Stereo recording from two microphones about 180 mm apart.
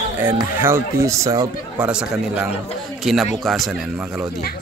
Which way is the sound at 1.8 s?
5° right (ahead or behind).